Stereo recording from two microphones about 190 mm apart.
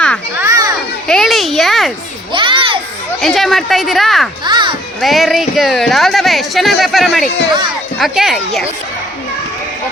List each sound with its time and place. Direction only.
0.3 s children playing: 15° right (ahead or behind)
1.0 s a sound: centre (ahead or behind)
2.3 s children playing: 25° right (ahead or behind)
3.2 s speech: centre (ahead or behind)
4.4 s speech: 25° right (ahead or behind)
4.9 s speech: centre (ahead or behind)